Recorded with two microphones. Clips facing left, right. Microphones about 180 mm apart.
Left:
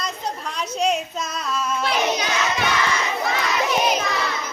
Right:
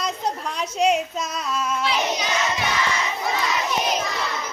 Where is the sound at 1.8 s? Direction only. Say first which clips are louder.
Left 2 dB; 50° left (ahead or behind).